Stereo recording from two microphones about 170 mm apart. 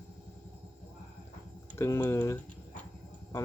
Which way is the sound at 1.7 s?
15° left (ahead or behind).